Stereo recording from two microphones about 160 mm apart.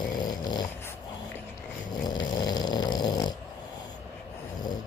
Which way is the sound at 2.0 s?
25° left (ahead or behind).